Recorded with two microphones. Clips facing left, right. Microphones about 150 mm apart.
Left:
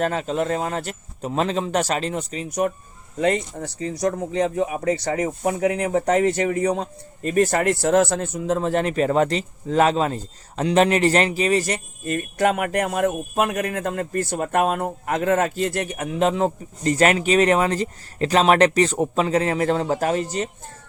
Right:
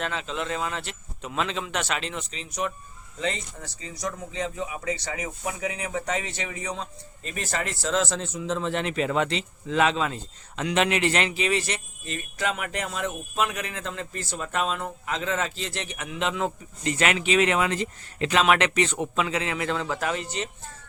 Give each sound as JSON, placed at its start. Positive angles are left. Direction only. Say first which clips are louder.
{"t": 0.0, "sound": "a man's voice", "louder": "left 8 dB", "side_deg": 45}